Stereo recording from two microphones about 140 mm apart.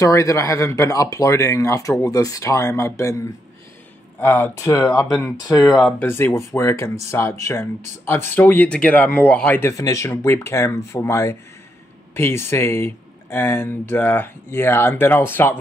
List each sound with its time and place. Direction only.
0.0 s speech: 25° left (ahead or behind)
5.7 s speech: 5° left (ahead or behind)
6.0 s speech: 15° left (ahead or behind)